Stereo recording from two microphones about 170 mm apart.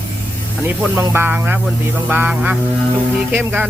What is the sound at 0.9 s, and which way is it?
Speech, 15° right (ahead or behind).